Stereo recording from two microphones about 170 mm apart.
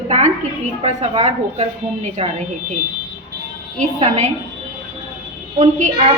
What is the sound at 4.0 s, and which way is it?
Speech, 40° right (ahead or behind).